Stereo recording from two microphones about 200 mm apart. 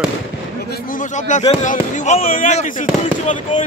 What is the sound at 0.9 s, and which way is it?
Speech, 35° left (ahead or behind).